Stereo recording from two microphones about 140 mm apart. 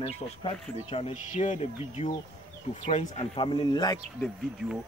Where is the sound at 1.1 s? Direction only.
60° left (ahead or behind).